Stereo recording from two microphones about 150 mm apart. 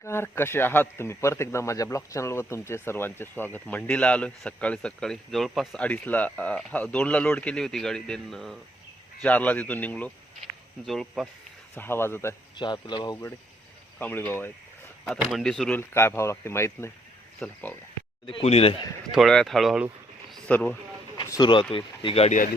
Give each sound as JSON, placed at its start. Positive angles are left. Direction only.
{"t": 0.0, "sound": "speech", "side_deg": 15}
{"t": 11.7, "sound": "speech", "side_deg": 15}
{"t": 12.5, "sound": "speech", "side_deg": 30}
{"t": 14.0, "sound": "speech", "side_deg": 10}
{"t": 15.3, "sound": "speech", "side_deg": 0}
{"t": 15.8, "sound": "speech", "side_deg": 15}
{"t": 18.3, "sound": "speech", "side_deg": 40}
{"t": 19.1, "sound": "speech", "side_deg": 0}
{"t": 20.3, "sound": "a sound", "side_deg": 10}
{"t": 21.2, "sound": "speech", "side_deg": 30}